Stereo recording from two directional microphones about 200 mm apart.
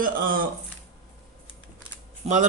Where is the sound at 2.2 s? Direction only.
35° right (ahead or behind).